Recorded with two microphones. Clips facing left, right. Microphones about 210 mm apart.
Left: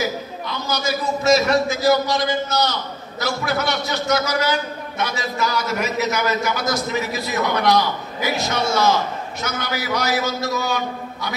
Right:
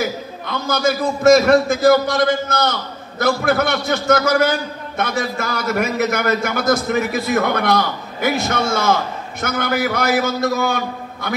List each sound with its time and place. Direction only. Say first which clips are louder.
0.0 s a man's voice: right 1 dB; 55° right (ahead or behind)